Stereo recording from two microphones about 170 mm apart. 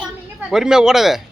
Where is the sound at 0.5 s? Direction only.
5° right (ahead or behind).